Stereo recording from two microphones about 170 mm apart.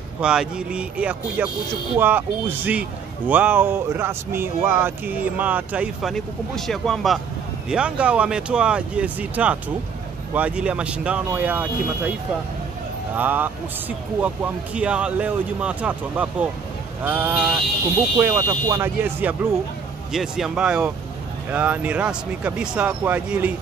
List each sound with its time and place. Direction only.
0.2 s speech: 5° right (ahead or behind)
6.1 s speech: centre (ahead or behind)
13.1 s speech: 10° right (ahead or behind)
20.1 s speech: 5° right (ahead or behind)